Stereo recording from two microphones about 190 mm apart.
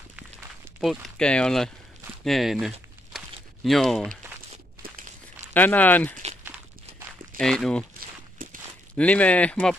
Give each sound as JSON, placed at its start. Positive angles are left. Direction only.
{"t": 0.7, "sound": "speech", "side_deg": 5}
{"t": 4.8, "sound": "walk", "side_deg": -50}
{"t": 5.5, "sound": "speech", "side_deg": 10}
{"t": 7.3, "sound": "speech", "side_deg": 0}
{"t": 8.4, "sound": "a sound", "side_deg": -45}
{"t": 8.9, "sound": "speech", "side_deg": 5}